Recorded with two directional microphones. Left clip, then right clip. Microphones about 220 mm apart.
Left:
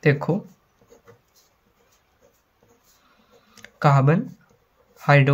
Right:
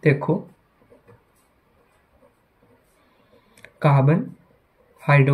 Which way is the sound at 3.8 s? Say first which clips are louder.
Left 1 dB; 5° left (ahead or behind).